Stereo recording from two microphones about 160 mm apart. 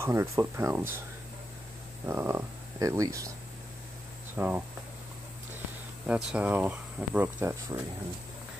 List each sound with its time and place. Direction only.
0.0 s speech: 15° right (ahead or behind)
2.0 s speech: 15° right (ahead or behind)
4.4 s speech: 10° right (ahead or behind)
6.0 s speech: 5° right (ahead or behind)